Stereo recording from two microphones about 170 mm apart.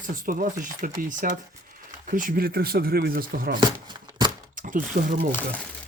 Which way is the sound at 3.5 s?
25° right (ahead or behind).